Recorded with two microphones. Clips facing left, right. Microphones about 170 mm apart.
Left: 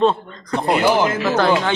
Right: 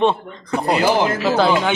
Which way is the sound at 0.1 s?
5° right (ahead or behind).